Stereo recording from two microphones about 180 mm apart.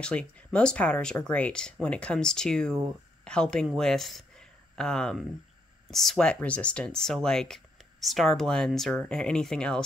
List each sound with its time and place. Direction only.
0.0 s speech: 5° left (ahead or behind)